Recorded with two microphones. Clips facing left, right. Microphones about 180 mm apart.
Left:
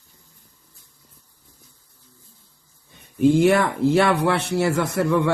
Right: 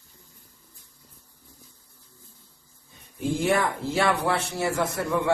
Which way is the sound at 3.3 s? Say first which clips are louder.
Left 3 dB; 70° left (ahead or behind).